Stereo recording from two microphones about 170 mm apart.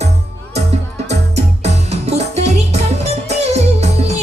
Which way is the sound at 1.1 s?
40° right (ahead or behind).